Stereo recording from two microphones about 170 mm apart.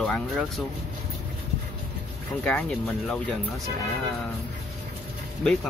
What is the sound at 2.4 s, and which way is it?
Speech, 5° left (ahead or behind).